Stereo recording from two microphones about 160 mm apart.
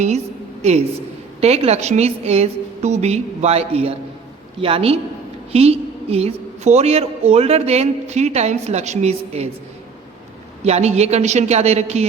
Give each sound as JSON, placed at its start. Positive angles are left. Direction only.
{"t": 1.4, "sound": "a woman's voice", "side_deg": -40}
{"t": 10.6, "sound": "a woman's voice", "side_deg": -40}